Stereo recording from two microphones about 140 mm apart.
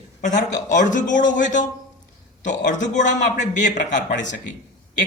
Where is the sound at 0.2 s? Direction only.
60° left (ahead or behind).